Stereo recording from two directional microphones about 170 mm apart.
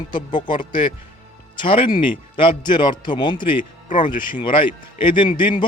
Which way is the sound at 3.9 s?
50° left (ahead or behind).